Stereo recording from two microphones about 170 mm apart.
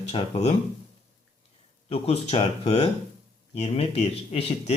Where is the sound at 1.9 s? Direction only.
40° left (ahead or behind).